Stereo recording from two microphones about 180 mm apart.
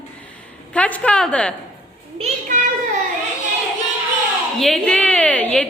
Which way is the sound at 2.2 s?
45° right (ahead or behind).